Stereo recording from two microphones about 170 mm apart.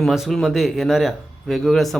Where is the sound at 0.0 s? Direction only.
Centre (ahead or behind).